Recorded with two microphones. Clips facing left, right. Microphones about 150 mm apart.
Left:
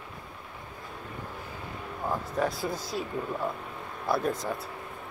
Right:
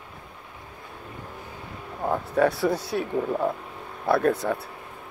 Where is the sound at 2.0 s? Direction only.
65° right (ahead or behind).